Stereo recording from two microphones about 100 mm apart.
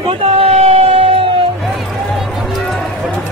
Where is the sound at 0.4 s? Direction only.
90° right.